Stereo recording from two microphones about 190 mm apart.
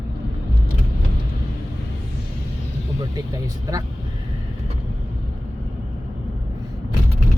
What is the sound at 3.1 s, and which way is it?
Speech, 20° right (ahead or behind).